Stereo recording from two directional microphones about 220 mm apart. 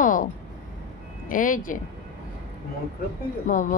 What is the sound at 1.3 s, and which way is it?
Speech, 40° left (ahead or behind).